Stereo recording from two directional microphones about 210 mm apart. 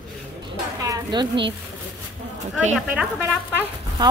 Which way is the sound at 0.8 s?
15° right (ahead or behind).